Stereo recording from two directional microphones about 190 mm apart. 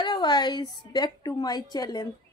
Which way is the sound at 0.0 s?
25° left (ahead or behind).